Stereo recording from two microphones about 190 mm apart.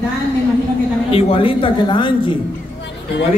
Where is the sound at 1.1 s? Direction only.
30° left (ahead or behind).